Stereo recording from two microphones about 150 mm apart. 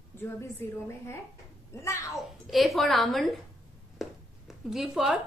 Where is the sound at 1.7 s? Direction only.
20° left (ahead or behind).